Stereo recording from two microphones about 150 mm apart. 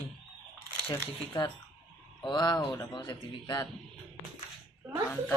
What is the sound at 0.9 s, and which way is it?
Speech, 20° left (ahead or behind).